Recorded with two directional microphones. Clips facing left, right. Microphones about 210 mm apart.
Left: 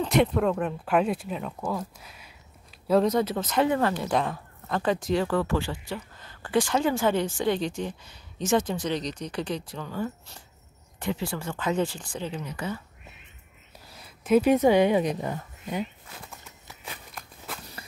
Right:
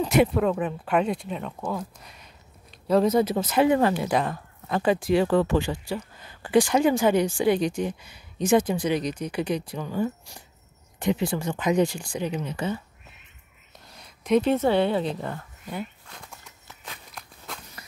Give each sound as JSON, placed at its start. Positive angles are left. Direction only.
{"t": 0.0, "sound": "speech", "side_deg": -5}
{"t": 12.4, "sound": "speech", "side_deg": -25}
{"t": 13.7, "sound": "speech", "side_deg": 5}
{"t": 16.1, "sound": "speech", "side_deg": 5}
{"t": 16.8, "sound": "a sound", "side_deg": 5}
{"t": 17.8, "sound": "walk", "side_deg": 30}